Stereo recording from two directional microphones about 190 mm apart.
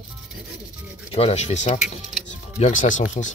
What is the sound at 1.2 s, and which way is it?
Speech, 35° left (ahead or behind).